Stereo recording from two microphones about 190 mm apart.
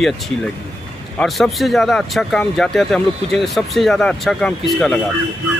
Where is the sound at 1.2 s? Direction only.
Centre (ahead or behind).